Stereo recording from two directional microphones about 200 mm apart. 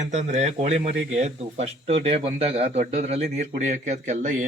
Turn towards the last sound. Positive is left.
turn(degrees=-40)  # may be behind; listen again after turning